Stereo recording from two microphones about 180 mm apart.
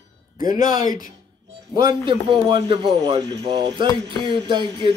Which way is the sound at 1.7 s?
25° right (ahead or behind).